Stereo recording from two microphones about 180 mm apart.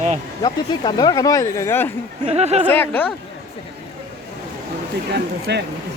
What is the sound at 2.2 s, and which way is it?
Speech, 35° right (ahead or behind).